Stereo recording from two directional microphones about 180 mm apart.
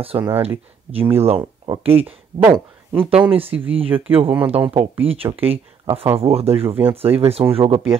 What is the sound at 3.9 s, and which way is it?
Speech, 10° right (ahead or behind).